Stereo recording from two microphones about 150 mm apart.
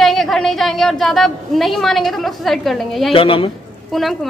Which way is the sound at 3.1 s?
35° left (ahead or behind).